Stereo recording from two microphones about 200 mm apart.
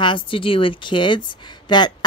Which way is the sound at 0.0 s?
25° left (ahead or behind).